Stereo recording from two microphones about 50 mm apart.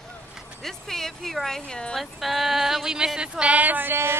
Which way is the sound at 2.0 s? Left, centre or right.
Centre.